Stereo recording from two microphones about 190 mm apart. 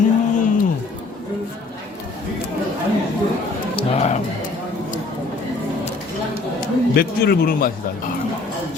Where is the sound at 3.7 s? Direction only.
35° left (ahead or behind).